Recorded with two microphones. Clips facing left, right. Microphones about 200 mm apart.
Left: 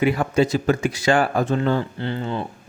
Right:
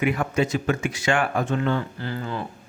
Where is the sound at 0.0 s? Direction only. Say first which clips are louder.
Left 4 dB; 35° left (ahead or behind).